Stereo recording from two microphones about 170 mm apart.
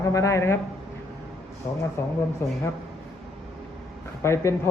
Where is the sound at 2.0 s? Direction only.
15° left (ahead or behind).